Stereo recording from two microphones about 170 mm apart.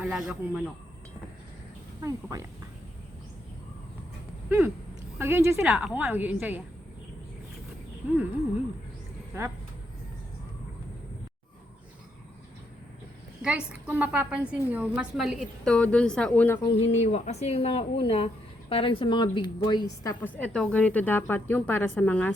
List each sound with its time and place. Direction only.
0.0 s a woman's voice: 5° right (ahead or behind)
2.0 s speech: 20° right (ahead or behind)
4.4 s a woman's voice: 10° right (ahead or behind)
13.4 s a woman's voice: 5° right (ahead or behind)
16.6 s a woman's voice: 40° left (ahead or behind)
20.2 s a woman's voice: 10° left (ahead or behind)